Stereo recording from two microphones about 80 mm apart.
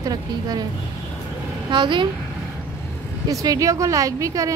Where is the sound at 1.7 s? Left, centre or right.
Right.